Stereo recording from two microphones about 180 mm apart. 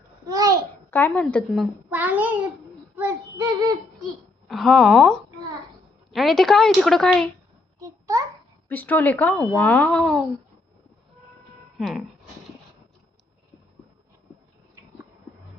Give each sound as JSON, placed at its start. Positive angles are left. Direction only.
{"t": 0.3, "sound": "babbling", "side_deg": -20}
{"t": 0.9, "sound": "speech", "side_deg": 10}
{"t": 1.9, "sound": "a child's voice", "side_deg": -10}
{"t": 7.8, "sound": "a sound", "side_deg": -20}
{"t": 8.7, "sound": "speech", "side_deg": 10}
{"t": 11.8, "sound": "speech", "side_deg": 0}